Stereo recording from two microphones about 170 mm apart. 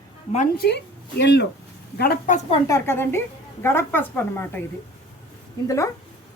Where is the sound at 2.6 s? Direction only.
15° left (ahead or behind).